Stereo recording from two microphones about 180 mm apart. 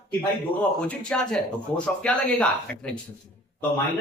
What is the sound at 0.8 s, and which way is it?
A man's voice, 5° left (ahead or behind).